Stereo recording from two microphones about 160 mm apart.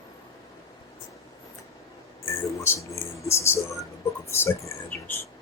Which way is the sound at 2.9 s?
15° left (ahead or behind).